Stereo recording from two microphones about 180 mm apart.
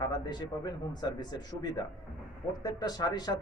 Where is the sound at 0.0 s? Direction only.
25° left (ahead or behind).